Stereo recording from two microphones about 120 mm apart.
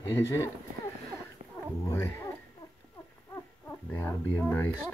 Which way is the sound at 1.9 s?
20° left (ahead or behind).